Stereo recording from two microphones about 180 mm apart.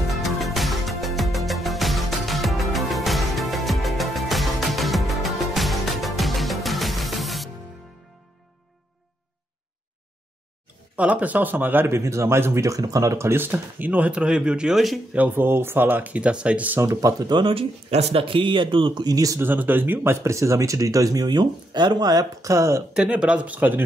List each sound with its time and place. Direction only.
0.1 s music: centre (ahead or behind)
11.0 s speech: 10° right (ahead or behind)
22.9 s speech: 5° right (ahead or behind)